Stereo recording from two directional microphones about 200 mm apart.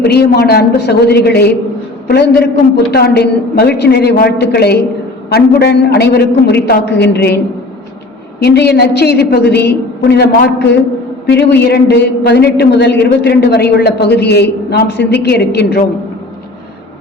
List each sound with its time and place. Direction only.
0.0 s a woman's voice: 55° left (ahead or behind)
8.4 s a man's voice: 55° left (ahead or behind)
11.3 s a man's voice: 60° left (ahead or behind)